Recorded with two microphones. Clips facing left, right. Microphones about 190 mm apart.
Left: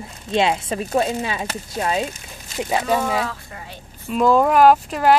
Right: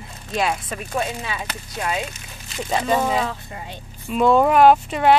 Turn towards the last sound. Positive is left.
turn(degrees=0)  # may be behind; listen again after turning